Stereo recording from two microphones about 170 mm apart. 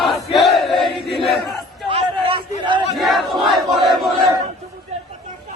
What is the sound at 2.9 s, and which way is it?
Battle cry, centre (ahead or behind).